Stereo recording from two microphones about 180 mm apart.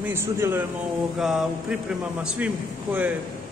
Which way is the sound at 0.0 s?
15° right (ahead or behind).